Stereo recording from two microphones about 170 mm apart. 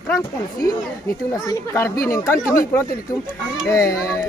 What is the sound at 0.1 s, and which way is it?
Speech, 20° left (ahead or behind).